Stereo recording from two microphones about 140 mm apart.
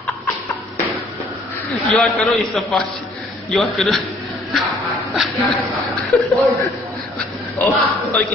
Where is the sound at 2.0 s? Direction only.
5° left (ahead or behind).